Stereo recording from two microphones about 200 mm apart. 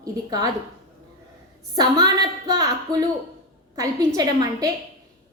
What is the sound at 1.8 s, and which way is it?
A woman's voice, 20° right (ahead or behind).